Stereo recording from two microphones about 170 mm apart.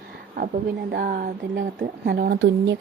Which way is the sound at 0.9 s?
60° right (ahead or behind).